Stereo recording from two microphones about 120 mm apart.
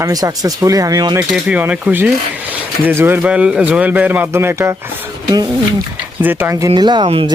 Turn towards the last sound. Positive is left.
turn(degrees=-40)  # may be behind; listen again after turning